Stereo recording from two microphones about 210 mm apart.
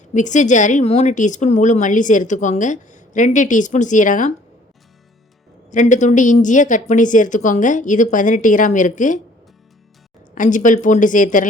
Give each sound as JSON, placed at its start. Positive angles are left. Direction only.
{"t": 0.1, "sound": "speech", "side_deg": 35}
{"t": 5.7, "sound": "speech", "side_deg": 35}
{"t": 10.3, "sound": "speech", "side_deg": 40}